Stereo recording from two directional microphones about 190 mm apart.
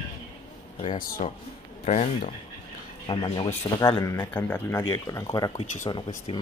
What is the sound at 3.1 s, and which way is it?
Speech, 25° left (ahead or behind).